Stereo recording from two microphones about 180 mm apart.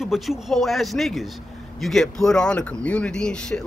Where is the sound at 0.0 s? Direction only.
Centre (ahead or behind).